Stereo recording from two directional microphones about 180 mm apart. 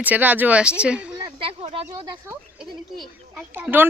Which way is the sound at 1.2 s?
30° right (ahead or behind).